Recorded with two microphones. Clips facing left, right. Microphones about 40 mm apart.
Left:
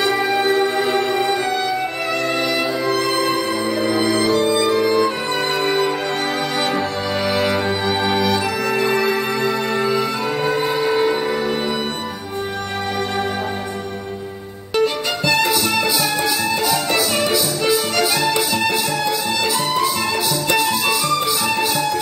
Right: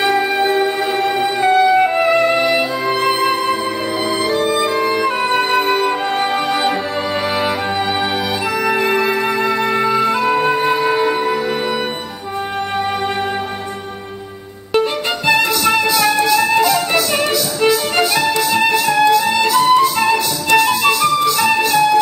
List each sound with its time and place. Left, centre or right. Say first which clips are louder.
0.0 s music: right 2 dB; centre
2.0 s music: right 7 dB; centre
3.0 s music: right 3 dB; right
4.0 s music: right 1 dB; centre
8.3 s music: right 2 dB; centre
9.8 s music: right 4 dB; centre
14.8 s music: right 1 dB; right
15.6 s music: right 4 dB; centre
16.3 s music: right 6 dB; centre
18.5 s music: right 5 dB; centre